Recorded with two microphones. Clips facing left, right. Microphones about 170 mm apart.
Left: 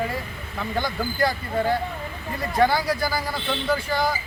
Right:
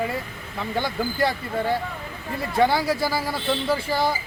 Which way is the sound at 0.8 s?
25° right (ahead or behind).